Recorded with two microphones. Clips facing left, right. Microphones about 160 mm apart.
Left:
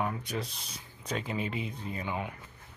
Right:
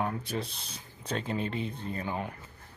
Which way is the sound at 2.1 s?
40° right (ahead or behind).